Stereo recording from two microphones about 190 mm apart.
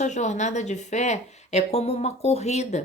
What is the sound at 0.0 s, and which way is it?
Speech, 40° left (ahead or behind).